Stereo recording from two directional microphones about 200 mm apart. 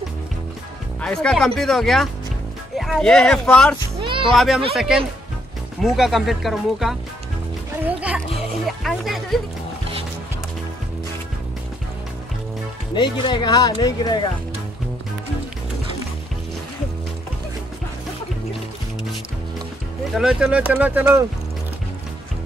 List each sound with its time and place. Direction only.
1.0 s speech: 5° left (ahead or behind)
4.0 s music: 25° right (ahead or behind)
4.3 s speech: centre (ahead or behind)
8.6 s speech: centre (ahead or behind)
12.9 s speech: 25° left (ahead or behind)
20.2 s speech: centre (ahead or behind)